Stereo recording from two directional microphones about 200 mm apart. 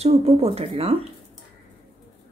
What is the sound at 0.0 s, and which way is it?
Speech, 30° right (ahead or behind).